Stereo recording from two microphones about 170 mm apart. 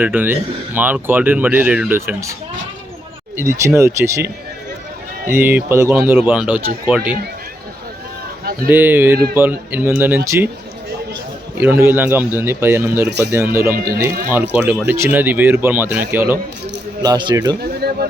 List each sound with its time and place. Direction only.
0.0 s speech: 10° right (ahead or behind)
3.3 s speech: 15° right (ahead or behind)
5.3 s speech: 10° right (ahead or behind)
8.7 s speech: 10° right (ahead or behind)
11.6 s speech: 15° right (ahead or behind)
13.1 s speech: 80° right
13.3 s speech: 15° right (ahead or behind)
13.7 s speech: 60° right (ahead or behind)
14.5 s speech: 10° right (ahead or behind)
17.0 s speech: 25° right (ahead or behind)
17.6 s a sound: 70° right (ahead or behind)